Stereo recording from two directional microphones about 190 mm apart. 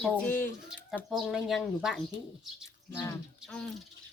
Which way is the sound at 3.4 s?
5° left (ahead or behind).